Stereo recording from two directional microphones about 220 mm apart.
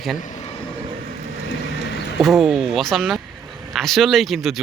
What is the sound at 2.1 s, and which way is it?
Speech, centre (ahead or behind).